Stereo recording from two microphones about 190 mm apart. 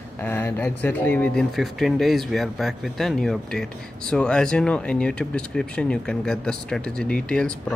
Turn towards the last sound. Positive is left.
turn(degrees=5)  # may be behind; listen again after turning